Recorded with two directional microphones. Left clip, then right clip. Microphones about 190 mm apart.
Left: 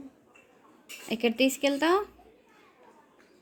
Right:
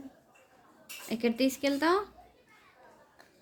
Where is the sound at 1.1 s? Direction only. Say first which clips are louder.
Left 4 dB; 10° left (ahead or behind).